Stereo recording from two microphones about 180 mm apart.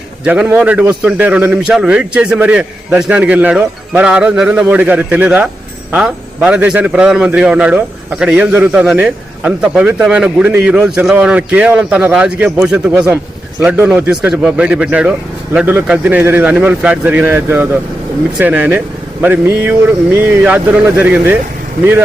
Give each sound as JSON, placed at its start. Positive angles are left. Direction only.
{"t": 0.3, "sound": "a man's voice", "side_deg": -10}